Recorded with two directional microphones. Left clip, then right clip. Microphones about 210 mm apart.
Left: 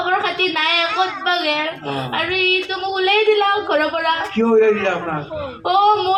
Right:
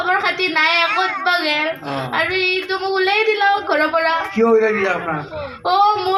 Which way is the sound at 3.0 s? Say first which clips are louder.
Left 1 dB; 20° left (ahead or behind).